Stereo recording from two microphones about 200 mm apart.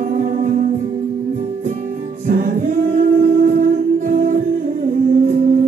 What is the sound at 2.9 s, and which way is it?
Music, 45° right (ahead or behind).